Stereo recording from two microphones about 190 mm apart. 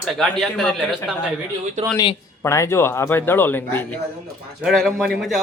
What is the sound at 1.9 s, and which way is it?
Speech, 15° left (ahead or behind).